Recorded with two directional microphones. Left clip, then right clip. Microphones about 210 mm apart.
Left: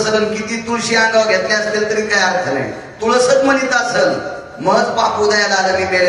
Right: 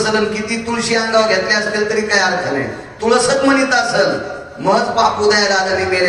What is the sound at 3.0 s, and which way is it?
A man's voice, 25° right (ahead or behind).